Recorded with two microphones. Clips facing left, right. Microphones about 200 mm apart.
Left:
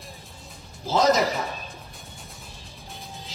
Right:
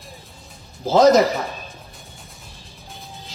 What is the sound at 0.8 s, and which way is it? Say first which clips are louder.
Speech: right 7 dB; 50° right (ahead or behind).